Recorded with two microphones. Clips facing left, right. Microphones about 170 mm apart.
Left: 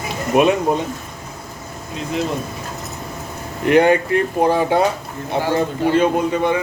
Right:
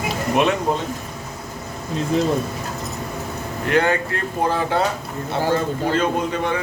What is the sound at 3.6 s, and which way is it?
Speech, 15° left (ahead or behind).